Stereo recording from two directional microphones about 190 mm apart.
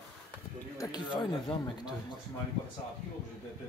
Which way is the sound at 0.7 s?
25° left (ahead or behind).